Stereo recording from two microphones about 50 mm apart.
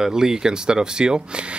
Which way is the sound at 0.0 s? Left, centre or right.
Centre.